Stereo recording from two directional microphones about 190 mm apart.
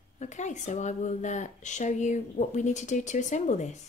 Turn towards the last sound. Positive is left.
turn(degrees=40)  # may be behind; listen again after turning